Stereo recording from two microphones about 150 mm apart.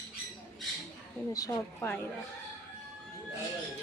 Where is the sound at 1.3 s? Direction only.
25° left (ahead or behind).